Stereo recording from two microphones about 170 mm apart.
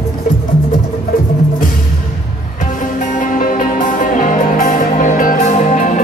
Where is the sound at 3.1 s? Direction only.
50° left (ahead or behind).